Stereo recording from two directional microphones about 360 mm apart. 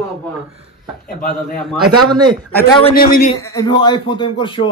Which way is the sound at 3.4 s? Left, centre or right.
Centre.